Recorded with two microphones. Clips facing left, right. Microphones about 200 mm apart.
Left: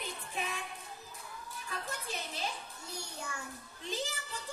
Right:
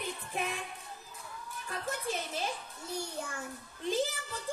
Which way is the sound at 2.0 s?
50° right (ahead or behind).